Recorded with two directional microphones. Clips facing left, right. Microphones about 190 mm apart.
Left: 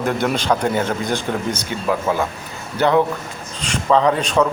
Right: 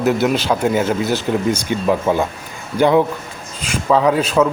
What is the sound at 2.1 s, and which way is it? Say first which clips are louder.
Speech: right 3 dB; 25° right (ahead or behind).